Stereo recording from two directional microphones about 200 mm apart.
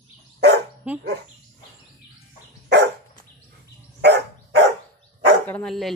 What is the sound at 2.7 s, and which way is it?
Dog, 60° right (ahead or behind).